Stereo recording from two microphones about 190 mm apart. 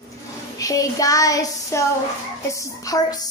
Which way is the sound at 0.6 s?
15° left (ahead or behind).